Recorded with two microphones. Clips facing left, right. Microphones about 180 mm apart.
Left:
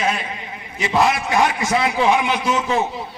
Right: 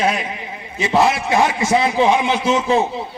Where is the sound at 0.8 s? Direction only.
25° right (ahead or behind).